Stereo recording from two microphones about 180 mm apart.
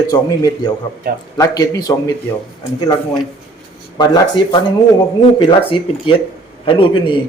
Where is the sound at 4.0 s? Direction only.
25° left (ahead or behind).